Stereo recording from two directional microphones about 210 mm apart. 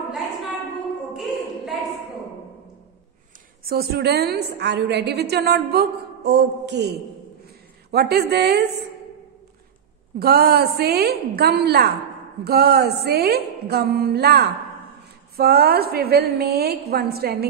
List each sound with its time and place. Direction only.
1.1 s a sound: centre (ahead or behind)
3.6 s a woman's voice: 50° right (ahead or behind)
10.1 s a woman's voice: 45° right (ahead or behind)